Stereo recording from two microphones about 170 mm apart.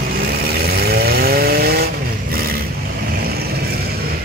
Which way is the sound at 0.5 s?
65° right (ahead or behind).